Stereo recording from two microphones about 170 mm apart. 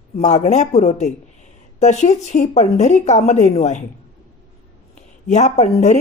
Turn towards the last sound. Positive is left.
turn(degrees=40)  # may be behind; listen again after turning